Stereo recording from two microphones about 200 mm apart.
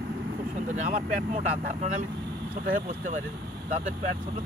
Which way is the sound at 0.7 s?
40° right (ahead or behind).